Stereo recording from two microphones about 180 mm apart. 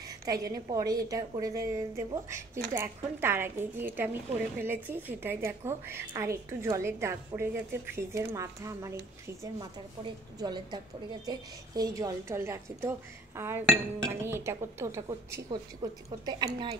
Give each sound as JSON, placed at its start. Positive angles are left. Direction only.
{"t": 0.2, "sound": "a woman's voice", "side_deg": -20}